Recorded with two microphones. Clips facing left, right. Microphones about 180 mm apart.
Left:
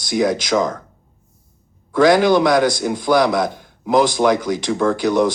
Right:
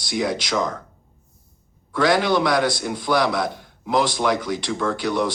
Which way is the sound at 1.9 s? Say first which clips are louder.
Left 6 dB; 45° left (ahead or behind).